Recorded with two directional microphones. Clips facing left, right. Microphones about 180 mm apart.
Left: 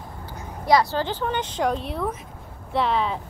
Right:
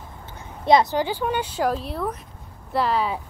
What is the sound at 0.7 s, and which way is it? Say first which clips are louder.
Speech: right 2 dB; 20° right (ahead or behind).